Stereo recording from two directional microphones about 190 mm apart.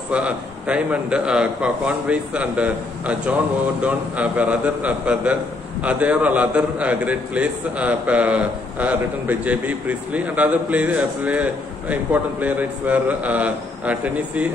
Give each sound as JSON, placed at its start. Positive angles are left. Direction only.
{"t": 0.1, "sound": "a man's voice", "side_deg": -5}